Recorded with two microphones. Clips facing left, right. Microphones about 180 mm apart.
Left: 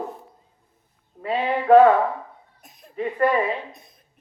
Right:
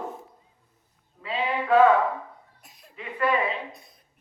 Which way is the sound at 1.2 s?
55° left (ahead or behind).